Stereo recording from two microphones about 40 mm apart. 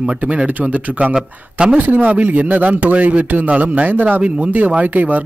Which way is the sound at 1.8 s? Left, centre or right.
Right.